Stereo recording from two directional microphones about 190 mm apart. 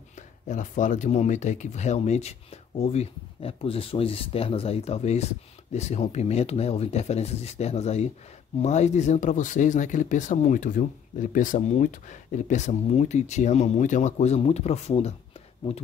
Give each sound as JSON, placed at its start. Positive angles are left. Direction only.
{"t": 0.5, "sound": "speech", "side_deg": 40}